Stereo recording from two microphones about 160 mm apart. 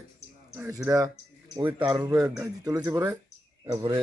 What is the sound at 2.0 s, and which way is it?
Speech, 15° right (ahead or behind).